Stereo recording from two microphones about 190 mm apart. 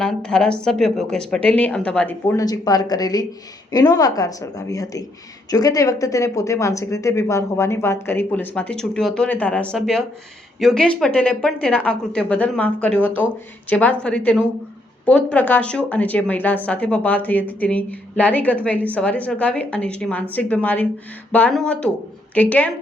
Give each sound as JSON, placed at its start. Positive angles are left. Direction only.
{"t": 0.0, "sound": "a woman's voice", "side_deg": 5}